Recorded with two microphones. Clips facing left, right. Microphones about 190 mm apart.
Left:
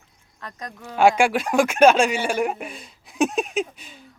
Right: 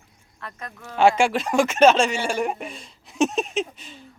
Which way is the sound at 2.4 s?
Centre (ahead or behind).